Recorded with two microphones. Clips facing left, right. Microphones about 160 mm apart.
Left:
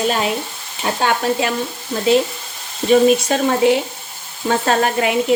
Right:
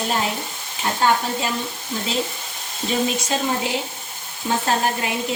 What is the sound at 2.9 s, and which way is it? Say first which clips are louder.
Speech: left 10 dB; 60° left (ahead or behind).